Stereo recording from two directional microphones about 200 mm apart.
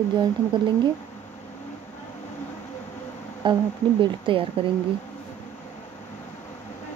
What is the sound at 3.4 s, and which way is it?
Speech, 25° right (ahead or behind).